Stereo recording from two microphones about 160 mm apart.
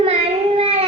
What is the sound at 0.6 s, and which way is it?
Child singing, 40° right (ahead or behind).